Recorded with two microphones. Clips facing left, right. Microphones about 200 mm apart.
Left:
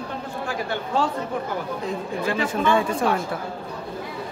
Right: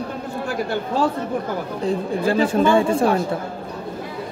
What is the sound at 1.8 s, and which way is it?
Speech, 35° right (ahead or behind).